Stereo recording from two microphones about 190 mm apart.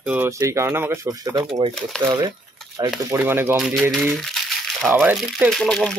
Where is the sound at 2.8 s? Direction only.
20° right (ahead or behind).